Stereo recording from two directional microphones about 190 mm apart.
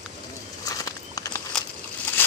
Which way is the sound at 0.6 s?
20° left (ahead or behind).